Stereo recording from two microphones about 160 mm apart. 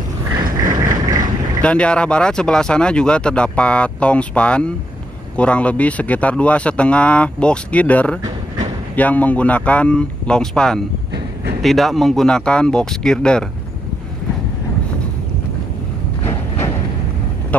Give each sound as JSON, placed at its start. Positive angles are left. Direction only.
{"t": 0.7, "sound": "a sound", "side_deg": -20}
{"t": 1.6, "sound": "speech", "side_deg": 5}
{"t": 16.3, "sound": "music", "side_deg": 15}